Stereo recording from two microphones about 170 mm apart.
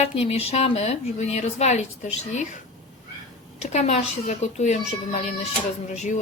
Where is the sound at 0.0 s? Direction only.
35° left (ahead or behind).